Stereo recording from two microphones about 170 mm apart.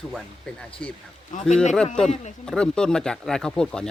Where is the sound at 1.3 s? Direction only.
50° left (ahead or behind).